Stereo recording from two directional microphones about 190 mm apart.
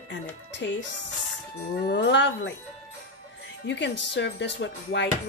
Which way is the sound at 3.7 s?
70° left (ahead or behind).